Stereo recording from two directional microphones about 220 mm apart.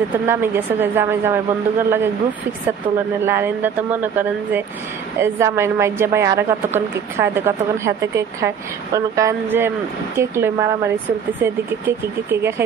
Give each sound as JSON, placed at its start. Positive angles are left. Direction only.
{"t": 0.3, "sound": "a woman's voice", "side_deg": -10}
{"t": 3.3, "sound": "a woman's voice", "side_deg": -10}